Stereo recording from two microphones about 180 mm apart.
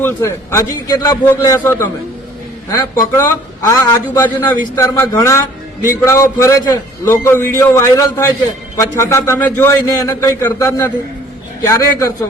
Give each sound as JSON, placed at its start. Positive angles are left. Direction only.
{"t": 0.0, "sound": "a man's voice", "side_deg": 15}